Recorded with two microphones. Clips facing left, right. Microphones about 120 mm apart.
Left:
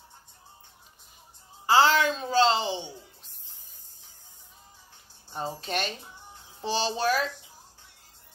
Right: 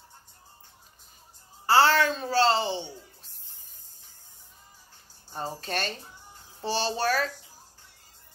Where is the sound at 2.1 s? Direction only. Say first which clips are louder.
Even; 20° left (ahead or behind).